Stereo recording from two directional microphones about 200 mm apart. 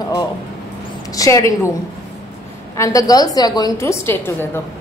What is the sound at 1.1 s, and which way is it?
Speech, 15° left (ahead or behind).